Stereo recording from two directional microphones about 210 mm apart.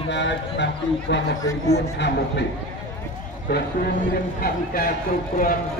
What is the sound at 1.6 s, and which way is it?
Speech, 50° left (ahead or behind).